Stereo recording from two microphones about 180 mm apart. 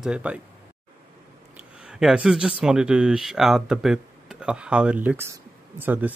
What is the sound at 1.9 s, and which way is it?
Speech, 5° right (ahead or behind).